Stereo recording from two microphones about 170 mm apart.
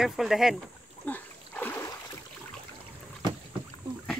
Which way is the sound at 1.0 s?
10° left (ahead or behind).